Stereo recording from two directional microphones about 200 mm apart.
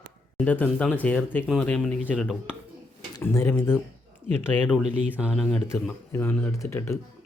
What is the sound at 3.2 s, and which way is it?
Speech, 10° left (ahead or behind).